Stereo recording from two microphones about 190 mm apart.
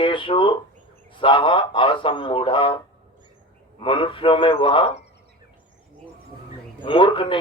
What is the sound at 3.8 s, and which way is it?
A man's voice, 25° left (ahead or behind).